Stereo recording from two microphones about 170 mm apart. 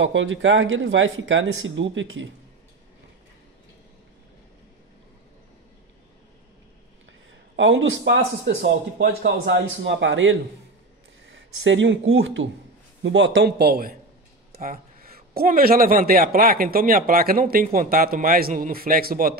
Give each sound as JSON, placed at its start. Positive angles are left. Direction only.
{"t": 0.0, "sound": "a man's voice", "side_deg": -90}
{"t": 7.5, "sound": "a man's voice", "side_deg": -85}
{"t": 11.3, "sound": "a man's voice", "side_deg": -90}